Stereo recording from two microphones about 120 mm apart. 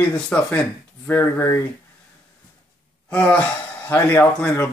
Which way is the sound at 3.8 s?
15° left (ahead or behind).